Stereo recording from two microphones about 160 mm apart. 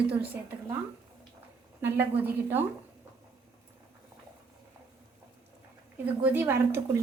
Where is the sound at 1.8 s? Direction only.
10° right (ahead or behind).